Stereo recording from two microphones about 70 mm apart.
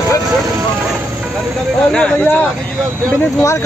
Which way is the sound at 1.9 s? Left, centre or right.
Centre.